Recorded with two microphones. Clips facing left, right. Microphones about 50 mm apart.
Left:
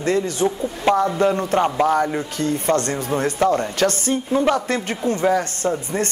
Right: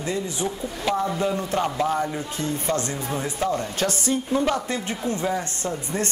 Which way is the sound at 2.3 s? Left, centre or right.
Left.